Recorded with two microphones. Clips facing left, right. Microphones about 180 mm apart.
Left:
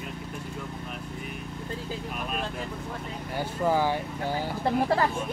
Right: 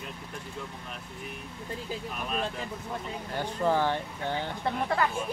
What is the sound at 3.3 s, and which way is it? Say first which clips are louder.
Speech: left 1 dB; 10° left (ahead or behind).